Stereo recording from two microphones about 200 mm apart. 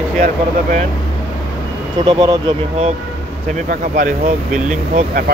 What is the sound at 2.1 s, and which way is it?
Speech, 20° right (ahead or behind).